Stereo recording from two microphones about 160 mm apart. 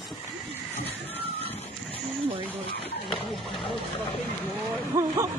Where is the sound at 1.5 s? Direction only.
40° left (ahead or behind).